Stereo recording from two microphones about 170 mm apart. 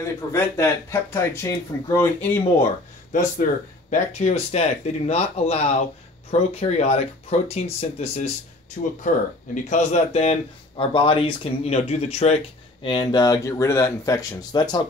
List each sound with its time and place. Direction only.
0.0 s speech: 15° left (ahead or behind)
3.1 s speech: 50° left (ahead or behind)
9.0 s speech: 50° left (ahead or behind)
10.8 s speech: 30° left (ahead or behind)